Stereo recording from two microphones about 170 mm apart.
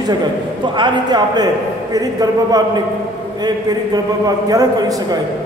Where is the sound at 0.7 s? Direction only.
25° right (ahead or behind).